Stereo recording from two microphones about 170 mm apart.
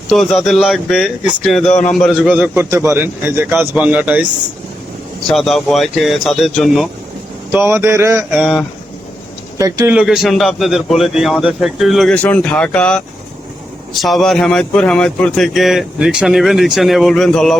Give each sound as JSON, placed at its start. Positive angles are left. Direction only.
{"t": 0.1, "sound": "a man's voice", "side_deg": 0}
{"t": 5.3, "sound": "speech", "side_deg": 0}
{"t": 7.5, "sound": "a man's voice", "side_deg": -15}
{"t": 8.3, "sound": "speech", "side_deg": -5}
{"t": 9.6, "sound": "speech", "side_deg": -20}
{"t": 9.9, "sound": "speech", "side_deg": -5}
{"t": 14.0, "sound": "speech", "side_deg": 0}